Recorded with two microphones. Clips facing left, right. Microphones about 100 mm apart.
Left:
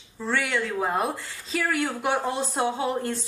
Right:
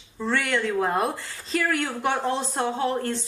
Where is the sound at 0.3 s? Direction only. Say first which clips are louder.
Right 2 dB; 5° left (ahead or behind).